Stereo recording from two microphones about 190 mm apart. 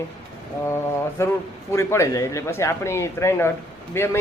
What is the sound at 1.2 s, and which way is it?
Speech, 15° left (ahead or behind).